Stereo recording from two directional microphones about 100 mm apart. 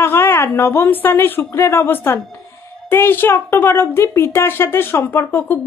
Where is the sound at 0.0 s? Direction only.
25° left (ahead or behind).